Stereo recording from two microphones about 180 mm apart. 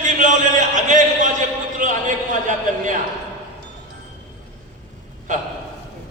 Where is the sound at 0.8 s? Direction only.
45° right (ahead or behind).